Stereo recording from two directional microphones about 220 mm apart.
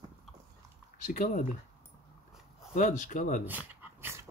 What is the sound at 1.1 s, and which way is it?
Speech, 35° left (ahead or behind).